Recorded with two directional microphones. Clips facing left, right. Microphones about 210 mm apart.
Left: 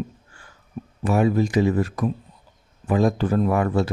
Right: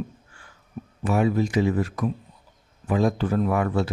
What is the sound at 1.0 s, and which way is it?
Speech, 40° left (ahead or behind).